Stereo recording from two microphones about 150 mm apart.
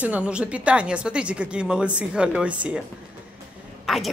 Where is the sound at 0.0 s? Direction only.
10° right (ahead or behind).